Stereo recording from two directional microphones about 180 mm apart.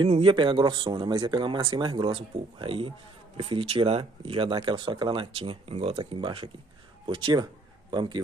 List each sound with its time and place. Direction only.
0.0 s speech: 30° right (ahead or behind)